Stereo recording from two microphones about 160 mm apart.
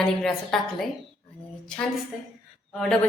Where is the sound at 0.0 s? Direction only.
5° left (ahead or behind).